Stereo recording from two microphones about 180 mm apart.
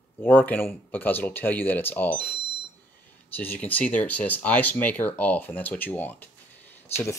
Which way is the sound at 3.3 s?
10° left (ahead or behind).